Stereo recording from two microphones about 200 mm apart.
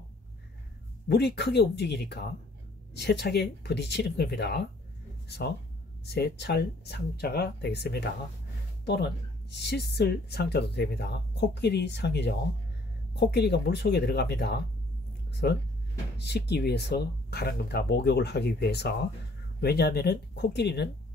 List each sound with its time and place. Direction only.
1.0 s speech: 55° left (ahead or behind)
6.0 s speech: 55° left (ahead or behind)